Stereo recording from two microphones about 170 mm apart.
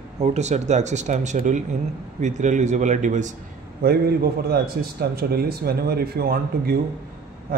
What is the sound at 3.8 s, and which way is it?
Speech, 65° right (ahead or behind).